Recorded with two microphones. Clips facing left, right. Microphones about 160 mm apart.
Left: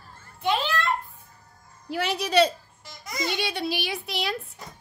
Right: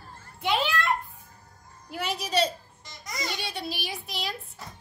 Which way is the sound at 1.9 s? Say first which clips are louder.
Left 4 dB; 80° left.